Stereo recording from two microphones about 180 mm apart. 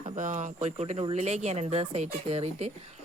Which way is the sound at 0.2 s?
45° right (ahead or behind).